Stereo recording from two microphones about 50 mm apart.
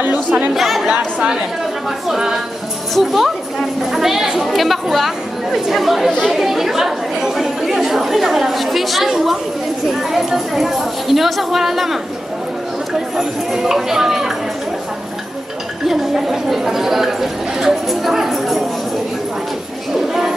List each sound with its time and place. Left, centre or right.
0.1 s speech: right
0.6 s chatter: centre
1.9 s a woman's voice: centre
13.1 s speech: centre
15.9 s a woman's voice: centre
20.1 s a sound: centre